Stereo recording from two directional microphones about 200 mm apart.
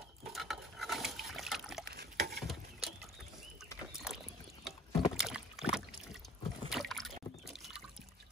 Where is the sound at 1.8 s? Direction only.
55° right (ahead or behind).